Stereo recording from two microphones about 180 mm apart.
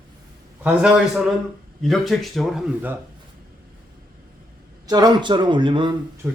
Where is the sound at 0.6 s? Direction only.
5° right (ahead or behind).